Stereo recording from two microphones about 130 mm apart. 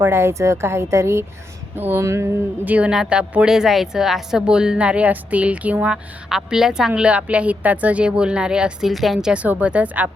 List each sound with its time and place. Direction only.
0.0 s a woman's voice: 20° right (ahead or behind)